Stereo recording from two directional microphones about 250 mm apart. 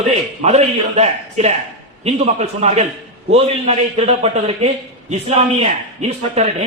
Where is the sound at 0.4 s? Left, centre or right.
Right.